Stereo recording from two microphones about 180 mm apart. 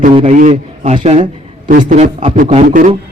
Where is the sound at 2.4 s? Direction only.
45° right (ahead or behind).